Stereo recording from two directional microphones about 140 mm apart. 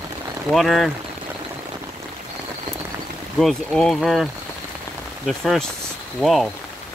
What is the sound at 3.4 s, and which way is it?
Speech, 5° left (ahead or behind).